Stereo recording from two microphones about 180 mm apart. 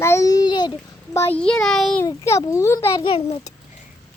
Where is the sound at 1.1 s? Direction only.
10° left (ahead or behind).